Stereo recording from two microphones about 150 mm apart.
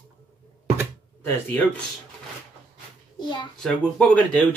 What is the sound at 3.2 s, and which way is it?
Speech, 30° left (ahead or behind).